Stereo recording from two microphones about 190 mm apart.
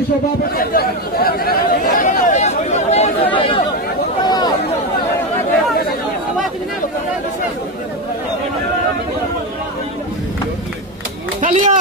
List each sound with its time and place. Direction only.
0.6 s chatter: 50° left (ahead or behind); by 3.6 s 25° left (ahead or behind)
4.2 s a sound: 20° left (ahead or behind)
11.4 s speech: 40° right (ahead or behind)